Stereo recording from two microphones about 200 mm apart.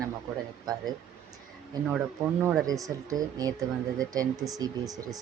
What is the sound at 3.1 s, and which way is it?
Speech, 15° right (ahead or behind).